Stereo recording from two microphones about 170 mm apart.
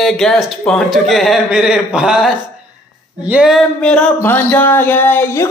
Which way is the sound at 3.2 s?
5° right (ahead or behind).